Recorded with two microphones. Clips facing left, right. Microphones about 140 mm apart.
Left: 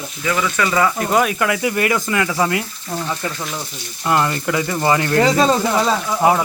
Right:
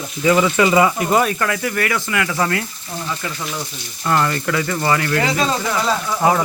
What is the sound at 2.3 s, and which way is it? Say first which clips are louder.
Speech: even; 10° left (ahead or behind).